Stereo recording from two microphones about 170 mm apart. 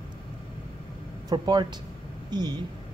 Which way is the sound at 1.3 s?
25° right (ahead or behind).